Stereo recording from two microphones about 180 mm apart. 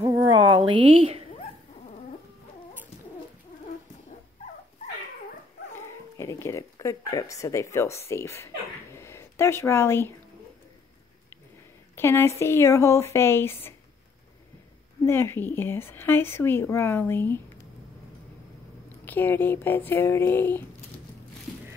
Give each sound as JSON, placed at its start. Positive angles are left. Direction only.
{"t": 0.0, "sound": "a sound", "side_deg": -25}
{"t": 6.1, "sound": "speech", "side_deg": 15}
{"t": 8.9, "sound": "a sound", "side_deg": 15}
{"t": 11.9, "sound": "speech", "side_deg": 15}
{"t": 15.0, "sound": "speech", "side_deg": 15}
{"t": 19.0, "sound": "speech", "side_deg": 10}